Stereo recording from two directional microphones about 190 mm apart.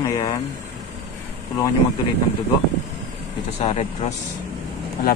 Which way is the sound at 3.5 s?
35° left (ahead or behind).